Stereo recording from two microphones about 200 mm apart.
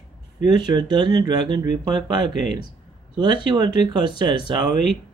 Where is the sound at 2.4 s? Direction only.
40° left (ahead or behind).